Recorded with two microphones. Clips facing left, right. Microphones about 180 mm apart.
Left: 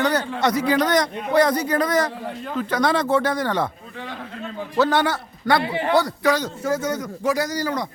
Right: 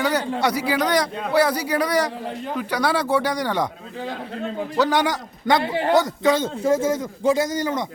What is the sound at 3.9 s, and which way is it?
Speech, 35° right (ahead or behind).